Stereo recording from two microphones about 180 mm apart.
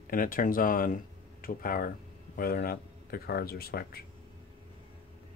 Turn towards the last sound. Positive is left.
turn(degrees=60)  # may be behind; listen again after turning